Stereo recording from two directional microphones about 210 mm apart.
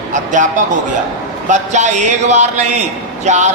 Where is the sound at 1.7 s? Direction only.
35° right (ahead or behind).